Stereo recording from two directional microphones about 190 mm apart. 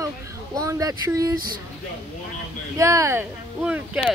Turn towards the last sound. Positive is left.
turn(degrees=-5)  # may be behind; listen again after turning